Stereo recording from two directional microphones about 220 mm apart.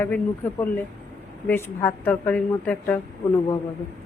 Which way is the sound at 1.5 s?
10° left (ahead or behind).